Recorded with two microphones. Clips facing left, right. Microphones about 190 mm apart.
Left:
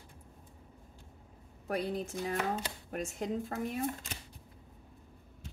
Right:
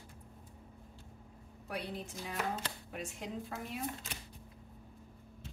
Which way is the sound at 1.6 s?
45° left (ahead or behind).